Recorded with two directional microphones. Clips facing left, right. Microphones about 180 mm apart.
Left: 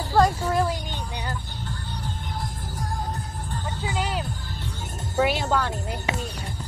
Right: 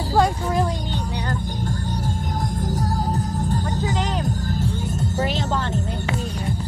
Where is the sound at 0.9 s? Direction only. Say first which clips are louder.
Right 6 dB; 10° left (ahead or behind).